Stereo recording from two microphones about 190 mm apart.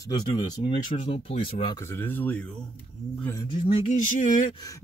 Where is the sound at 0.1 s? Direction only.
20° left (ahead or behind).